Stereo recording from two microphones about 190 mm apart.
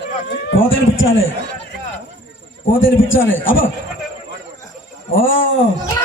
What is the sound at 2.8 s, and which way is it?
Speech, 85° left.